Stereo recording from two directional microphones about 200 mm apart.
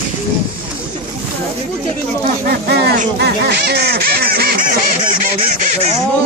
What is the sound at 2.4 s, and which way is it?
Speech, 50° right (ahead or behind).